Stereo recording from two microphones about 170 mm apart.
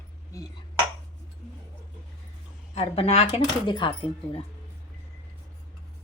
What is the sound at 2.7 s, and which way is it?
A woman's voice, 35° left (ahead or behind).